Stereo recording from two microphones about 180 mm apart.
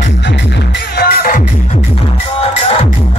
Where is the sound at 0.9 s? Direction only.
55° left (ahead or behind).